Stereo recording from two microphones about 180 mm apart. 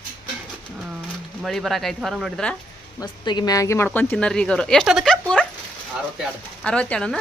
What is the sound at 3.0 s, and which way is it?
Speech, 25° left (ahead or behind).